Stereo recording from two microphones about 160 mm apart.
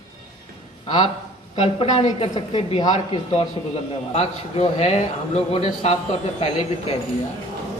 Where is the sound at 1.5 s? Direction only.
40° left (ahead or behind).